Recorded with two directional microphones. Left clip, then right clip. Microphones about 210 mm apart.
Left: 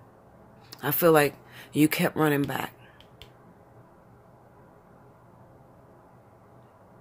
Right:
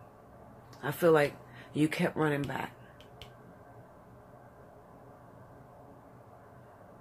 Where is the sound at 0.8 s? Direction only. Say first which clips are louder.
Left 5 dB; 45° left (ahead or behind).